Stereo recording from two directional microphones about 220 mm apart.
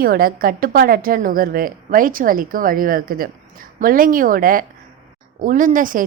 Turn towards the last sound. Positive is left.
turn(degrees=-35)  # may be behind; listen again after turning